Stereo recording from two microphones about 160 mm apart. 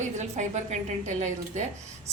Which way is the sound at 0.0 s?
50° right (ahead or behind).